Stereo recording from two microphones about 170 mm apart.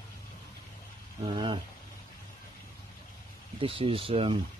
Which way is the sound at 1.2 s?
30° right (ahead or behind).